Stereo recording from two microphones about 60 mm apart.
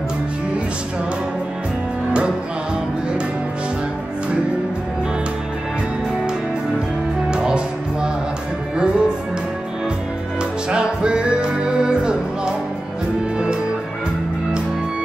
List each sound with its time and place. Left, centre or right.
7.2 s music: centre
10.7 s music: centre